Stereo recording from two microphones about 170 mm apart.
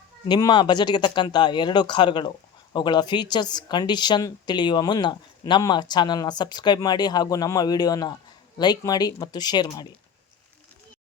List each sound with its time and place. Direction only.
0.3 s speech: 25° left (ahead or behind)